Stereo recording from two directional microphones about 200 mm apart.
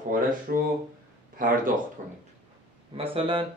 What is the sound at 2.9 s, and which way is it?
Speech, 30° right (ahead or behind).